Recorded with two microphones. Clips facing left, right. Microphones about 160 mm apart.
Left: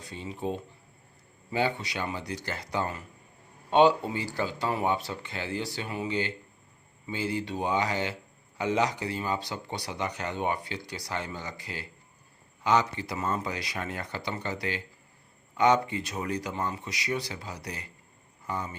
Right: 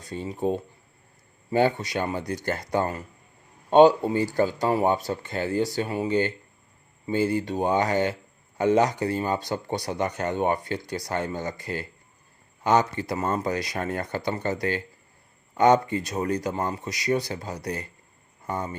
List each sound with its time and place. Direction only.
0.0 s speech: 45° right (ahead or behind)